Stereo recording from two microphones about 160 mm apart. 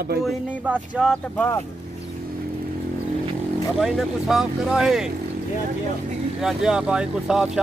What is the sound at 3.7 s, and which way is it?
Speech, 5° right (ahead or behind).